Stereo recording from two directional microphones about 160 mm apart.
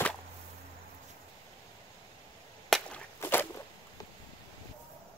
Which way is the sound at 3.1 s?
15° left (ahead or behind).